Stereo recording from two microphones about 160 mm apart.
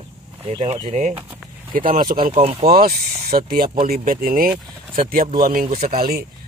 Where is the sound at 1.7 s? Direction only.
60° right (ahead or behind).